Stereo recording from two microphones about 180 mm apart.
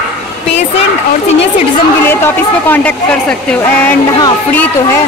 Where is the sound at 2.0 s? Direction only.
10° left (ahead or behind).